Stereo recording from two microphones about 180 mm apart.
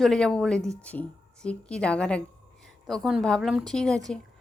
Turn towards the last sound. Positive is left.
turn(degrees=5)  # may be behind; listen again after turning